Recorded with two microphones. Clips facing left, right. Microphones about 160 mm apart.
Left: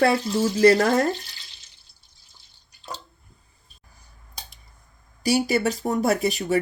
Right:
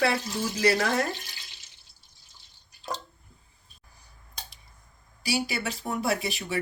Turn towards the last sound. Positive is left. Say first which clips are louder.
# left 7 dB
turn(degrees=45)  # may be behind; listen again after turning